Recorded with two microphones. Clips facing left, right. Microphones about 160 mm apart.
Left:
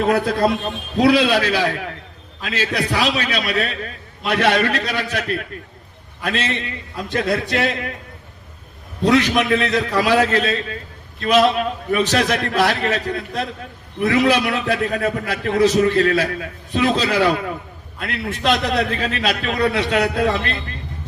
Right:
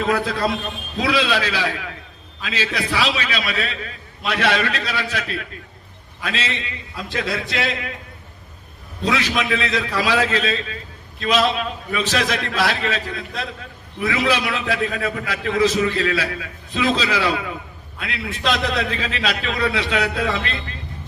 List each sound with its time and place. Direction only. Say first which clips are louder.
0.0 s a man's voice: left 4 dB; 50° left (ahead or behind)
9.0 s a man's voice: left 6 dB; 50° left (ahead or behind)